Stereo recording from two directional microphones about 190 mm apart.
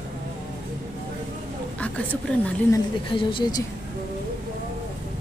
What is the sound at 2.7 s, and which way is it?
Speech, 25° left (ahead or behind).